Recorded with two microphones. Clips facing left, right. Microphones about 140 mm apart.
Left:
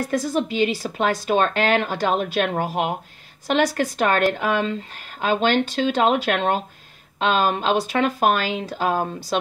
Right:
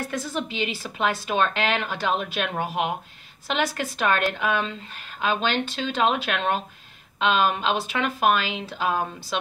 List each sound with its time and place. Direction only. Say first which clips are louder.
0.0 s speech: left 7 dB; 40° left (ahead or behind)